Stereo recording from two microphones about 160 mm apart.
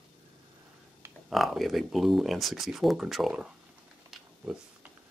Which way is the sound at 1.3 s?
Centre (ahead or behind).